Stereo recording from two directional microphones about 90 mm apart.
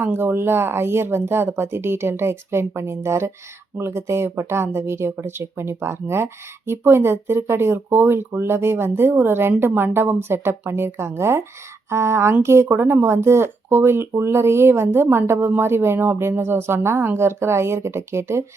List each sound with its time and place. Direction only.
0.0 s speech: 25° right (ahead or behind)